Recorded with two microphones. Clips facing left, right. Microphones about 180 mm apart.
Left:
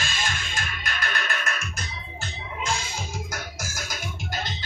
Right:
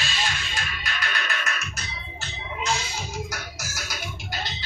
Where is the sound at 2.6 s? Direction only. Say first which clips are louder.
Right 1 dB; 50° left (ahead or behind).